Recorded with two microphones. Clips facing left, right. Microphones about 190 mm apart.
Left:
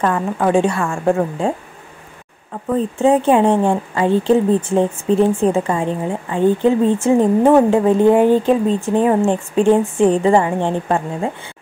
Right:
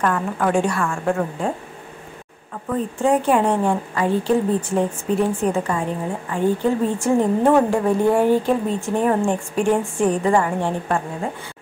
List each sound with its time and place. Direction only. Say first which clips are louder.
0.0 s a woman's voice: left 3 dB; 20° left (ahead or behind)
2.7 s a woman's voice: left 4 dB; 25° left (ahead or behind)